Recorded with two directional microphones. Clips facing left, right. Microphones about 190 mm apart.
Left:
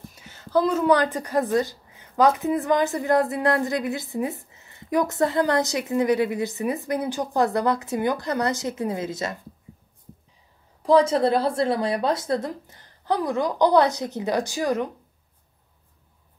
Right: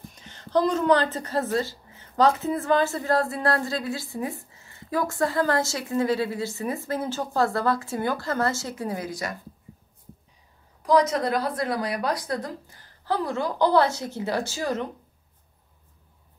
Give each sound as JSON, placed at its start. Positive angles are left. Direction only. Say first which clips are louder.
{"t": 0.1, "sound": "a woman's voice", "louder": "left 1 dB", "side_deg": 5}
{"t": 10.8, "sound": "a woman's voice", "louder": "left 3 dB", "side_deg": 30}